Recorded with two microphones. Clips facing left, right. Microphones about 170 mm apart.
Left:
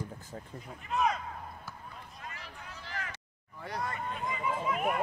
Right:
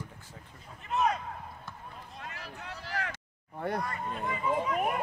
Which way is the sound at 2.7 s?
40° right (ahead or behind).